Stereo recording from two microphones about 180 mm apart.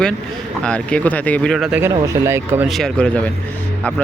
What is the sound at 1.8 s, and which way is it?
Speech, 15° right (ahead or behind).